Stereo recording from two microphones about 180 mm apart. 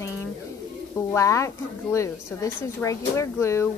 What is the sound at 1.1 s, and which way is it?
A woman's voice, 15° left (ahead or behind).